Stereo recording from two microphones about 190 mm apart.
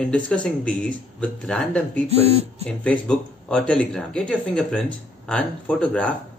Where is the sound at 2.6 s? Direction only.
5° left (ahead or behind).